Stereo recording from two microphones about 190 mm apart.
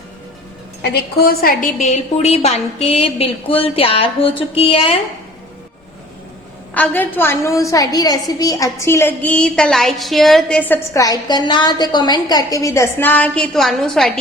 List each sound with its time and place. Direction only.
0.8 s a woman's voice: 55° left (ahead or behind)
1.8 s a woman's voice: 35° left (ahead or behind)
6.7 s a woman's voice: 10° left (ahead or behind)